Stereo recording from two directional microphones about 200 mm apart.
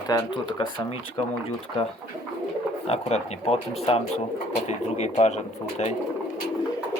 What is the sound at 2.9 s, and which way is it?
Speech, 30° left (ahead or behind).